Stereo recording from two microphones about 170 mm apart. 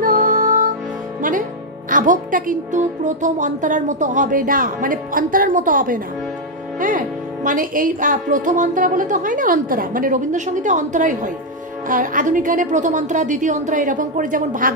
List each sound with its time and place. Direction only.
0.0 s music: 50° right (ahead or behind)
1.9 s a woman's voice: 50° right (ahead or behind)